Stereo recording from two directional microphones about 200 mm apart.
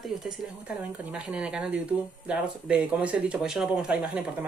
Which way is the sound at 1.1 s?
5° right (ahead or behind).